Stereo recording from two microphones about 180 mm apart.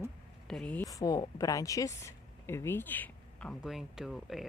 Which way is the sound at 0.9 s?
20° left (ahead or behind).